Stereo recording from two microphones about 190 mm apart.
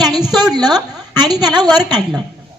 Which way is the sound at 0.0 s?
20° right (ahead or behind).